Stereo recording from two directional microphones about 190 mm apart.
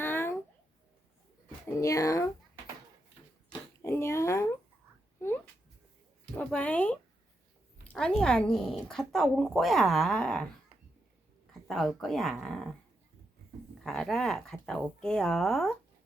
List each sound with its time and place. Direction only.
0.0 s babbling: 10° left (ahead or behind)
1.6 s speech: 15° left (ahead or behind)
3.5 s a sound: 15° left (ahead or behind)
6.3 s speech: 5° left (ahead or behind)
11.7 s speech: centre (ahead or behind)
13.8 s speech: centre (ahead or behind)